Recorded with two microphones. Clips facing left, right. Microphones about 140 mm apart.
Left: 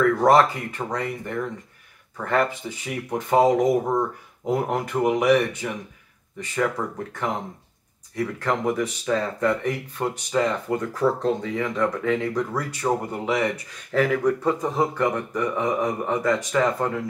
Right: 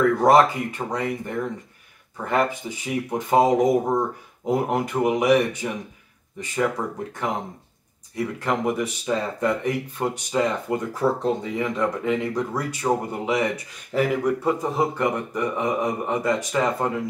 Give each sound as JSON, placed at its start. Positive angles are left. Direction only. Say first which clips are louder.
{"t": 0.2, "sound": "speech", "louder": "right 1 dB", "side_deg": -15}
{"t": 7.2, "sound": "speech", "louder": "even", "side_deg": -15}